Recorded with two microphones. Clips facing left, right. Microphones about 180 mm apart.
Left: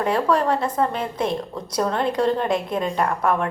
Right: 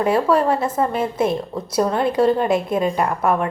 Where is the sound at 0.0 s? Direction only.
5° right (ahead or behind).